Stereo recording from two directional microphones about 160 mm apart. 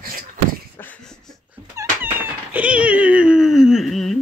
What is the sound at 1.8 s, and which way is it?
Cat, 15° right (ahead or behind).